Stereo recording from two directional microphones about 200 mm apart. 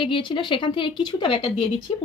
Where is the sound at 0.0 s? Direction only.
25° left (ahead or behind).